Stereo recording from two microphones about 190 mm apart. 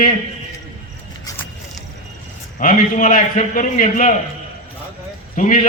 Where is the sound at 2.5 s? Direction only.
45° left (ahead or behind).